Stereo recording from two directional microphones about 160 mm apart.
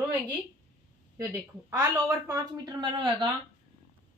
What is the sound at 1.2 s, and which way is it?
A woman's voice, 20° right (ahead or behind).